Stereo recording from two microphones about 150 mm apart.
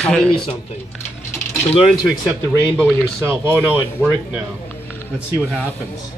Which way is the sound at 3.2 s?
15° right (ahead or behind).